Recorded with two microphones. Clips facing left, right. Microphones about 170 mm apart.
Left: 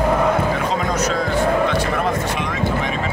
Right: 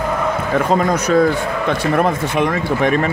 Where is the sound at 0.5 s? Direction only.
55° right (ahead or behind).